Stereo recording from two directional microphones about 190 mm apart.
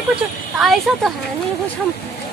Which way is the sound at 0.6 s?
Centre (ahead or behind).